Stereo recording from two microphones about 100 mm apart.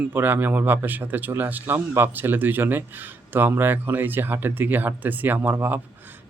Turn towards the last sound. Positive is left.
turn(degrees=-20)  # may be behind; listen again after turning